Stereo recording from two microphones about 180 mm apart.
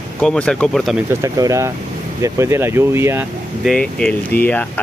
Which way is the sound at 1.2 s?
15° right (ahead or behind).